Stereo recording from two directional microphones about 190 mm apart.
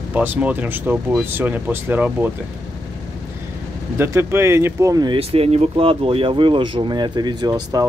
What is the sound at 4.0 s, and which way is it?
Speech, 10° right (ahead or behind).